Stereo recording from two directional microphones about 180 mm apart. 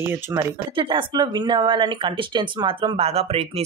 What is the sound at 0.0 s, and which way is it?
Speech, 15° right (ahead or behind).